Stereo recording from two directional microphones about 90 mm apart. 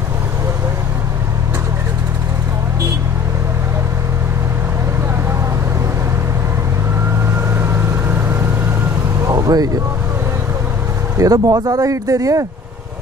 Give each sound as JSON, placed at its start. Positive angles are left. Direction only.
{"t": 7.6, "sound": "vehicle", "side_deg": -25}
{"t": 9.3, "sound": "vehicle", "side_deg": -45}
{"t": 11.1, "sound": "speech", "side_deg": -45}